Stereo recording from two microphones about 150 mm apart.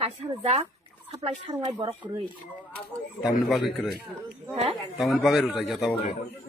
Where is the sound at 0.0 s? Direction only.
45° right (ahead or behind).